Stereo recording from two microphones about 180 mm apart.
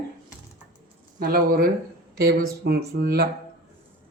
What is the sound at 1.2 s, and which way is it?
Speech, 55° right (ahead or behind).